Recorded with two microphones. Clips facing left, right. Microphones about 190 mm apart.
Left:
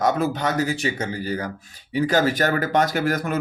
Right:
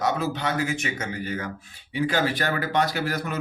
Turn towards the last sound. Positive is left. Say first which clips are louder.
# left 5 dB
turn(degrees=50)  # may be behind; listen again after turning